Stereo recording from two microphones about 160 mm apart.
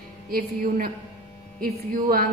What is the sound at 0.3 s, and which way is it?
A woman's voice, 65° right (ahead or behind).